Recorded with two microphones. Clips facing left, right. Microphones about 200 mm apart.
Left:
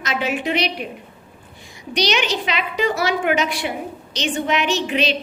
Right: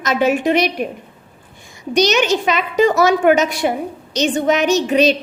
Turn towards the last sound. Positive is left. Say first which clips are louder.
# right 7 dB
turn(degrees=-40)  # may be behind; listen again after turning